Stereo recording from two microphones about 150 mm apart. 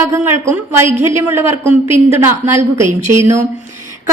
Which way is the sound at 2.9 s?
50° right (ahead or behind).